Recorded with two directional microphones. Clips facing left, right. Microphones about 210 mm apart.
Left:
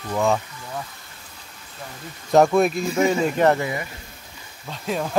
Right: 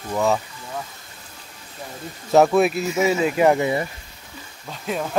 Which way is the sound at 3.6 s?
30° right (ahead or behind).